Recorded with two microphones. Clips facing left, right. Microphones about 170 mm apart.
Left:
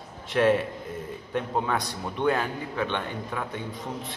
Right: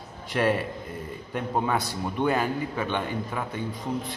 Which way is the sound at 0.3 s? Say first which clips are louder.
Left 3 dB; centre (ahead or behind).